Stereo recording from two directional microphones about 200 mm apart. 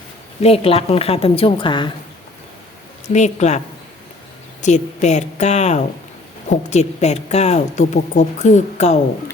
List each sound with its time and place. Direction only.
0.4 s a woman's voice: 30° left (ahead or behind)
3.1 s a woman's voice: 35° left (ahead or behind)
4.6 s a woman's voice: 35° left (ahead or behind)